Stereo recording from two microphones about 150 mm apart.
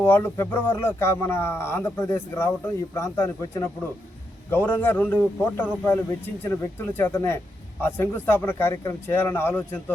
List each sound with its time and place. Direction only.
0.0 s a man's voice: 15° left (ahead or behind)